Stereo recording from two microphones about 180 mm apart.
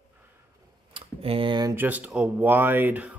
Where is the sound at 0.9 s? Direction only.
30° right (ahead or behind).